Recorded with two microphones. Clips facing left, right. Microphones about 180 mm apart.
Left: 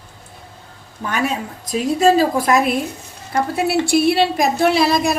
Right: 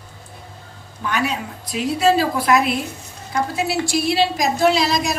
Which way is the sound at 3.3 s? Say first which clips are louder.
Left 3 dB; 55° left (ahead or behind).